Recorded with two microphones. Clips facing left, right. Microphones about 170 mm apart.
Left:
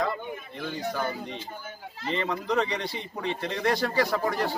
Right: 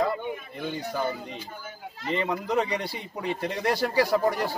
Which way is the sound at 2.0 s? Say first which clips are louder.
Right 1 dB; 5° right (ahead or behind).